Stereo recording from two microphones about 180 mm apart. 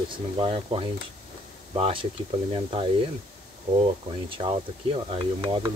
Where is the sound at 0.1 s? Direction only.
30° right (ahead or behind).